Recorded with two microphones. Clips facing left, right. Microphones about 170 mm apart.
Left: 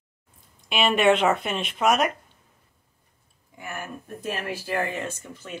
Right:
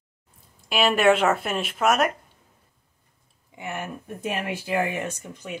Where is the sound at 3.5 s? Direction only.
20° right (ahead or behind).